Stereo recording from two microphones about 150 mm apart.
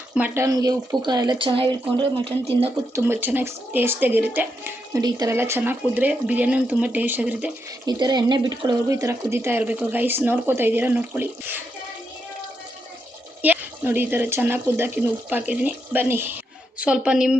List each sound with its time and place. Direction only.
0.3 s speech: 25° right (ahead or behind); by 2.6 s 40° right (ahead or behind)
2.9 s speech: 15° right (ahead or behind)
4.9 s speech: 25° right (ahead or behind); by 7.5 s 10° right (ahead or behind)
7.9 s speech: 30° right (ahead or behind)
13.4 s a woman's voice: 10° right (ahead or behind)